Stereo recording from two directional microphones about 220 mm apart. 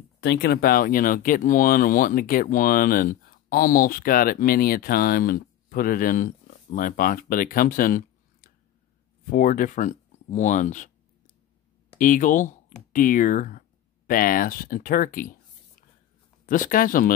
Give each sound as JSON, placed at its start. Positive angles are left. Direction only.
{"t": 0.2, "sound": "speech", "side_deg": 50}
{"t": 12.0, "sound": "speech", "side_deg": 35}
{"t": 16.4, "sound": "speech", "side_deg": 40}